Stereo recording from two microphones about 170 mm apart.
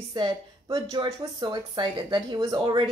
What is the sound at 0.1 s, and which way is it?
Speech, 25° right (ahead or behind).